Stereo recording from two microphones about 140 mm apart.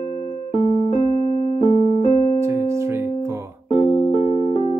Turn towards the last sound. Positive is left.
turn(degrees=45)  # may be behind; listen again after turning